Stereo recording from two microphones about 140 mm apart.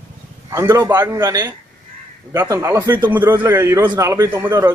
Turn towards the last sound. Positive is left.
turn(degrees=-25)  # may be behind; listen again after turning